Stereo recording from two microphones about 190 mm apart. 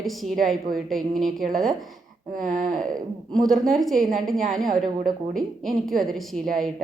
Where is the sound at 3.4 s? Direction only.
Centre (ahead or behind).